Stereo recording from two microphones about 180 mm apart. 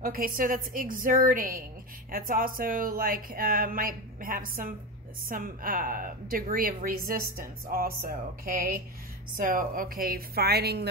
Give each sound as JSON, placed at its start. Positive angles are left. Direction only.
{"t": 0.0, "sound": "a woman's voice", "side_deg": -55}